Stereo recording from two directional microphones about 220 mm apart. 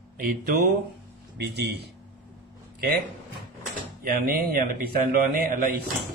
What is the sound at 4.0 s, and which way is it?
A man's voice, 40° right (ahead or behind).